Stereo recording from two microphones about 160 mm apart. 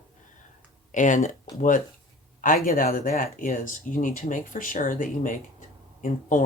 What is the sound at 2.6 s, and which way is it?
Speech, 60° left (ahead or behind).